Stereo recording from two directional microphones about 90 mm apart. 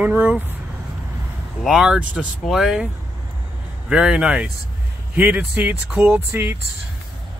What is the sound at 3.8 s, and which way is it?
Speech, 10° right (ahead or behind).